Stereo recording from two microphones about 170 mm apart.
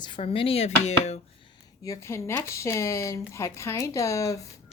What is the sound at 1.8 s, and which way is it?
A woman's voice, 20° left (ahead or behind).